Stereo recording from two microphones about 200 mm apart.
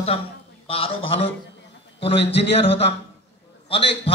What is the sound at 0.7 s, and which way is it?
A man's voice, 30° left (ahead or behind).